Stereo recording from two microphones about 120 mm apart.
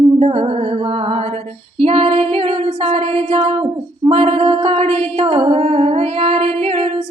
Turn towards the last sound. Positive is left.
turn(degrees=-55)  # may be behind; listen again after turning